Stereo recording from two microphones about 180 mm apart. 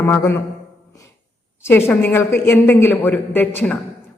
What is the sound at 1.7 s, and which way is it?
A man's voice, 10° left (ahead or behind).